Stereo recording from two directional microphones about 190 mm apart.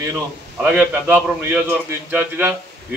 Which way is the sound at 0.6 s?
10° right (ahead or behind).